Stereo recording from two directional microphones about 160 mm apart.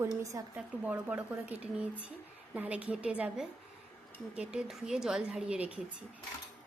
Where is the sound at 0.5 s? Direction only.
5° right (ahead or behind).